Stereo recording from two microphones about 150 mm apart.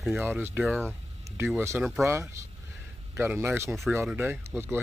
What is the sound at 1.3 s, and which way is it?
Speech, 15° right (ahead or behind).